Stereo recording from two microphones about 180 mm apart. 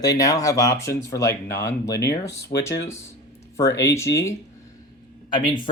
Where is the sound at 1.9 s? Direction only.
70° left (ahead or behind).